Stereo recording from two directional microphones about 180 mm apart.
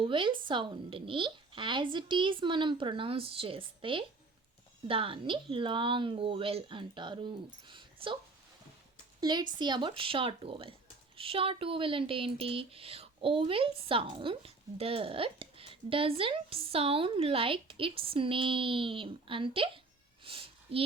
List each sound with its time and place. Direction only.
0.0 s a woman's voice: 30° right (ahead or behind)
9.2 s a woman's voice: 25° right (ahead or behind)
20.2 s a sound: 30° right (ahead or behind)